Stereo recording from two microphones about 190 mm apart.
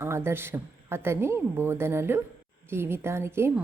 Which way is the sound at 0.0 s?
15° right (ahead or behind).